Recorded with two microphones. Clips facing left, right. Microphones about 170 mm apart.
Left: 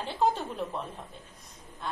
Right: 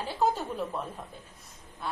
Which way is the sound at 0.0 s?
5° right (ahead or behind).